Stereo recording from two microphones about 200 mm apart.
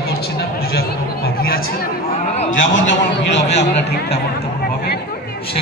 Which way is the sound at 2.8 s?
65° left (ahead or behind).